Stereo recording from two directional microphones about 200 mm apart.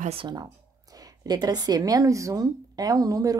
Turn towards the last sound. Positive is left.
turn(degrees=-20)  # may be behind; listen again after turning